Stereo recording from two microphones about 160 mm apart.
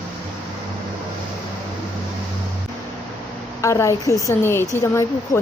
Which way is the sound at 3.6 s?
20° left (ahead or behind).